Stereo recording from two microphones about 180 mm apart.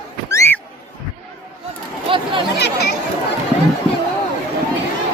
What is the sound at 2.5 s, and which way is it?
Chatter, 70° left (ahead or behind).